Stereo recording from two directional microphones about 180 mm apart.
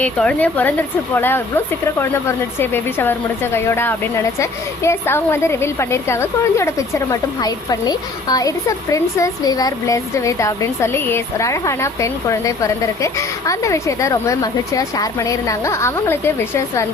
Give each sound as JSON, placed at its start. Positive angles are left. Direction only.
{"t": 0.0, "sound": "a woman's voice", "side_deg": 5}